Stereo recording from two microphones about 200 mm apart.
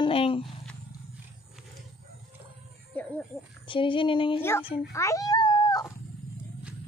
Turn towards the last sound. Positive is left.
turn(degrees=20)  # may be behind; listen again after turning